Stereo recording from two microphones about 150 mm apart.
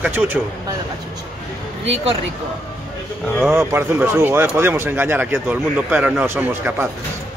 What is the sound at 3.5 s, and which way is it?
Speech, 15° right (ahead or behind).